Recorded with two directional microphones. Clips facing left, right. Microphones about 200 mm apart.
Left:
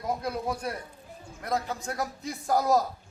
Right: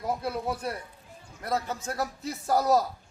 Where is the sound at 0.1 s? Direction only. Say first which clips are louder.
Even; 5° right (ahead or behind).